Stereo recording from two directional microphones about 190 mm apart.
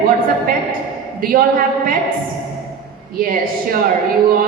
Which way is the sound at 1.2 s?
50° right (ahead or behind).